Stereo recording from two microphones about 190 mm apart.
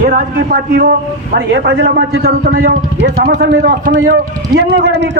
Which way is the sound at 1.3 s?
65° right (ahead or behind).